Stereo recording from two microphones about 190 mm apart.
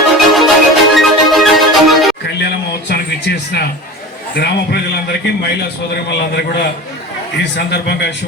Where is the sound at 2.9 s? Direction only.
60° left (ahead or behind).